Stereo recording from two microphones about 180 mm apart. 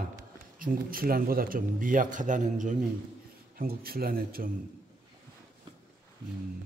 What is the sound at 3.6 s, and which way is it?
Speech, 55° right (ahead or behind).